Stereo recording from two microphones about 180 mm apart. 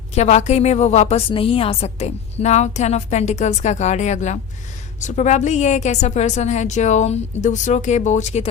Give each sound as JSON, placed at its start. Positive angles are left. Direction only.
{"t": 0.1, "sound": "a woman's voice", "side_deg": 40}